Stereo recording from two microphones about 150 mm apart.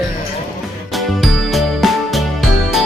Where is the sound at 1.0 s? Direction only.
Centre (ahead or behind).